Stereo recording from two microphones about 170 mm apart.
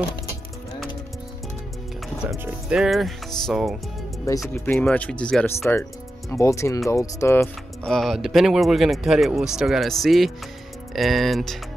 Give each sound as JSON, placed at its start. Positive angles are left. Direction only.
{"t": 2.3, "sound": "speech", "side_deg": -10}
{"t": 7.8, "sound": "speech", "side_deg": 0}